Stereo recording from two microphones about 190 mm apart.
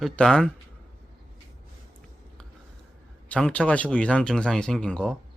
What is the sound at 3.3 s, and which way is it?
Speech, 5° left (ahead or behind).